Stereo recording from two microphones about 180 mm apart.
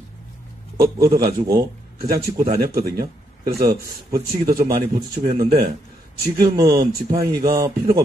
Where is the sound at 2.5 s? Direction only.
60° right (ahead or behind).